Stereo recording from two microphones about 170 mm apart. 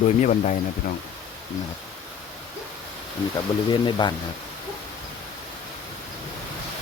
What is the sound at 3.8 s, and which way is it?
Speech, 25° left (ahead or behind).